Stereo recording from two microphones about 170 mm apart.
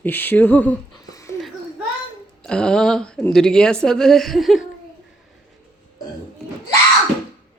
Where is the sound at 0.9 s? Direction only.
20° left (ahead or behind).